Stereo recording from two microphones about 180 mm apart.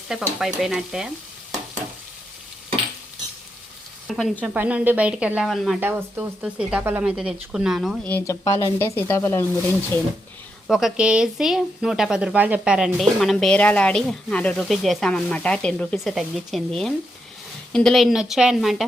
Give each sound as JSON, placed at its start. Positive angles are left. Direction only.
{"t": 0.1, "sound": "speech", "side_deg": 0}
{"t": 4.0, "sound": "speech", "side_deg": 0}
{"t": 5.8, "sound": "speech", "side_deg": -10}
{"t": 8.1, "sound": "speech", "side_deg": 15}
{"t": 10.7, "sound": "speech", "side_deg": 0}